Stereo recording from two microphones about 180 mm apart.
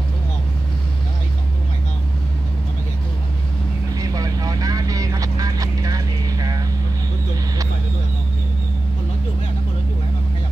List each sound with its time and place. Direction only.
3.9 s vehicle: 20° right (ahead or behind)